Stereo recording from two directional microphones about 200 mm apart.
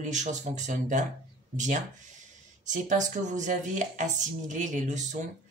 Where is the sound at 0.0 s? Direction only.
35° right (ahead or behind).